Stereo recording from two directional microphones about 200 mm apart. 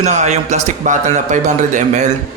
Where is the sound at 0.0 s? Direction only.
35° right (ahead or behind).